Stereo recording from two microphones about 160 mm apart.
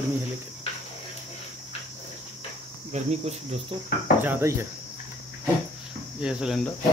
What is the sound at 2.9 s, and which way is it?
Cricket, 40° right (ahead or behind).